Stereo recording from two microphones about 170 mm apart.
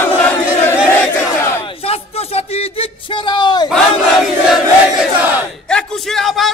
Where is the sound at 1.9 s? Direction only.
35° left (ahead or behind).